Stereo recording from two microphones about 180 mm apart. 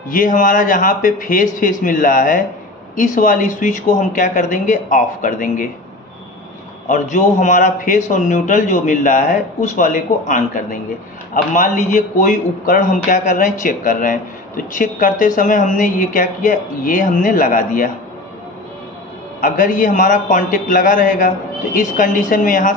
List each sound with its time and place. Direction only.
0.1 s a man's voice: 50° left (ahead or behind)
6.9 s a man's voice: 45° left (ahead or behind)
19.4 s a man's voice: 50° left (ahead or behind)